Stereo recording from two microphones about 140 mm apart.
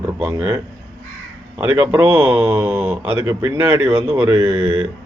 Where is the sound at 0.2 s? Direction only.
15° right (ahead or behind).